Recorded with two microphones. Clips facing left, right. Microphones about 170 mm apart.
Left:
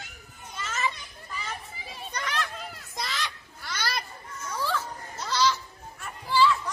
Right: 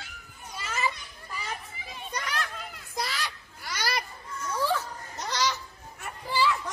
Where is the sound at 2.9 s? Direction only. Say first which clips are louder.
Right 1 dB; 10° right (ahead or behind).